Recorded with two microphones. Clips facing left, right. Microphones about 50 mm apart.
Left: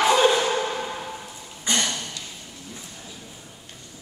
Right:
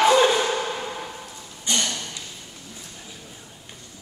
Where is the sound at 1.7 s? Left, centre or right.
Left.